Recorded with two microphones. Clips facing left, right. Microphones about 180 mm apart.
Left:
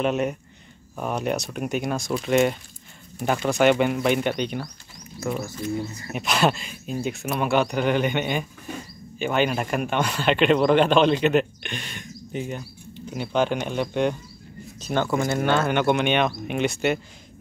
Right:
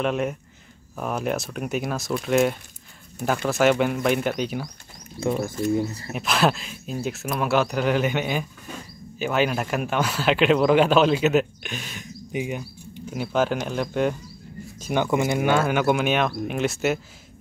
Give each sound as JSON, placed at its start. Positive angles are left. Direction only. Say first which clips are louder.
{"t": 0.0, "sound": "speech", "louder": "left 1 dB", "side_deg": 0}
{"t": 5.2, "sound": "speech", "louder": "right 3 dB", "side_deg": -20}
{"t": 5.6, "sound": "speech", "louder": "right 5 dB", "side_deg": -35}
{"t": 6.1, "sound": "speech", "louder": "even", "side_deg": 0}
{"t": 14.8, "sound": "speech", "louder": "right 1 dB", "side_deg": -15}